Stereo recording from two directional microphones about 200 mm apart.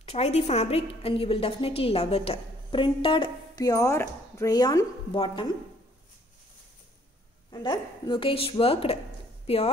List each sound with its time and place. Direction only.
0.0 s a woman's voice: 30° left (ahead or behind)
7.5 s a woman's voice: 25° left (ahead or behind)